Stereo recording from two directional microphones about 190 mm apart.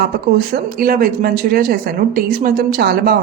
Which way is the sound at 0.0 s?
55° right (ahead or behind).